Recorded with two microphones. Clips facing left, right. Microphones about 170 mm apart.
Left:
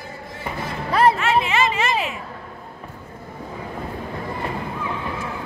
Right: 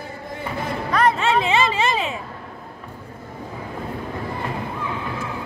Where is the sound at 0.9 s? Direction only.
30° left (ahead or behind).